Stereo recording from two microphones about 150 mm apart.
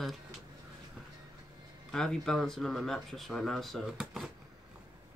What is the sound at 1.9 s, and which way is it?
Speech, 5° left (ahead or behind).